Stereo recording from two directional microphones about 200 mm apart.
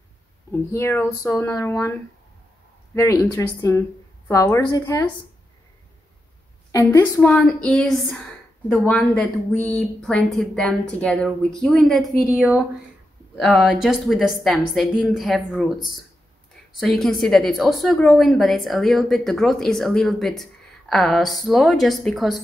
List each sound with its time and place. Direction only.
0.5 s speech: 10° left (ahead or behind)
6.7 s a woman's voice: 15° left (ahead or behind)